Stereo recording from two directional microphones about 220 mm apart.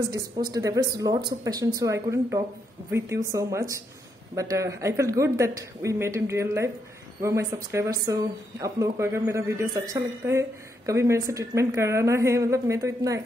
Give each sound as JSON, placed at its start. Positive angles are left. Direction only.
{"t": 0.1, "sound": "speech", "side_deg": -15}